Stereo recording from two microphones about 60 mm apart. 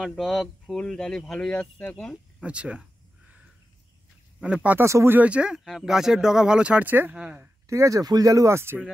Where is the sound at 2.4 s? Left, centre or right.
Centre.